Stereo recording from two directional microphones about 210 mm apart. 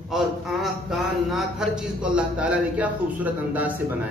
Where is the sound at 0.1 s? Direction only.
Centre (ahead or behind).